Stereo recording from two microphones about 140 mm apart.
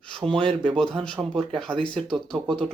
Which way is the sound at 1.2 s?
15° right (ahead or behind).